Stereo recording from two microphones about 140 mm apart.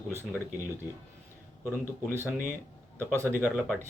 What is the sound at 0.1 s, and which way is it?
Speech, 15° right (ahead or behind).